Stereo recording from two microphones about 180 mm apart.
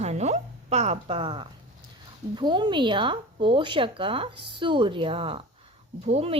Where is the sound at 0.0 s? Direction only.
40° right (ahead or behind).